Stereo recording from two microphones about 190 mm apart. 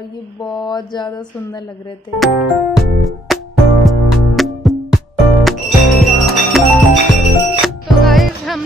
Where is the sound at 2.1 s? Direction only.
Centre (ahead or behind).